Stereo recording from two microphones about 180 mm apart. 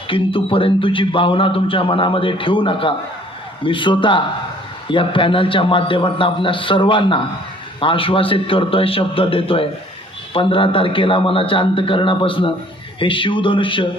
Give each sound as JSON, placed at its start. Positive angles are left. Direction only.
{"t": 0.1, "sound": "a man's voice", "side_deg": 30}